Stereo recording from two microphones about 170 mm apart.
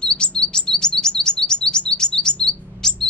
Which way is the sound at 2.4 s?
5° left (ahead or behind).